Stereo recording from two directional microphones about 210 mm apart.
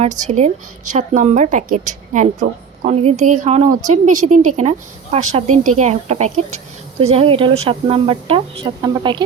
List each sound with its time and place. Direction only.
0.0 s a woman's voice: 30° right (ahead or behind)